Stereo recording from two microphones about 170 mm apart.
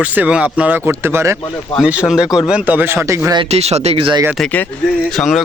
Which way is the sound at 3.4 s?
40° right (ahead or behind).